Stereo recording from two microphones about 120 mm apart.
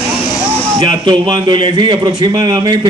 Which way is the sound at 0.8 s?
40° right (ahead or behind).